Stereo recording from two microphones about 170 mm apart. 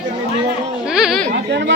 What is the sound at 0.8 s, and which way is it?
Speech, 5° right (ahead or behind).